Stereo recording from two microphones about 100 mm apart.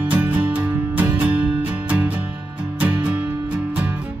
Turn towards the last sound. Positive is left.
turn(degrees=-15)  # may be behind; listen again after turning